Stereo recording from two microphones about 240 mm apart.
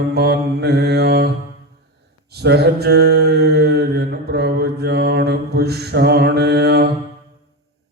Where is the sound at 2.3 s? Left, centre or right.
Right.